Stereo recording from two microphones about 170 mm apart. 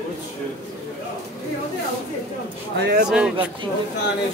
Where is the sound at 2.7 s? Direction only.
80° right.